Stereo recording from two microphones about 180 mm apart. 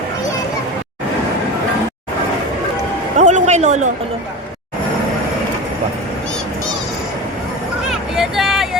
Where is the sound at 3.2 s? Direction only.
40° right (ahead or behind).